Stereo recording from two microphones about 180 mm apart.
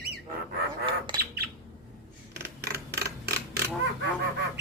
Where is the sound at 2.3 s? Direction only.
65° right (ahead or behind).